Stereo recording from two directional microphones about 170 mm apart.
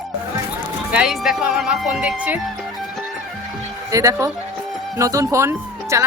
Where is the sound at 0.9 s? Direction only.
5° right (ahead or behind).